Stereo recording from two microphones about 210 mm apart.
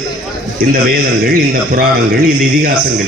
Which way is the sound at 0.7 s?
45° right (ahead or behind).